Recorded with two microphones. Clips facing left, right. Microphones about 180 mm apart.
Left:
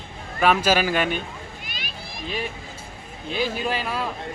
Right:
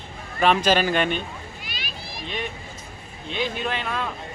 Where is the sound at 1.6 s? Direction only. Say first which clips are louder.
Even; 50° left (ahead or behind).